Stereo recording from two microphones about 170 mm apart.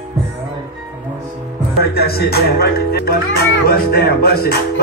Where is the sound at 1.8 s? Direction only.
65° left (ahead or behind).